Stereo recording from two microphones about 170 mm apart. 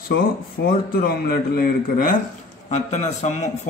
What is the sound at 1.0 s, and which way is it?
A man's voice, 60° left (ahead or behind).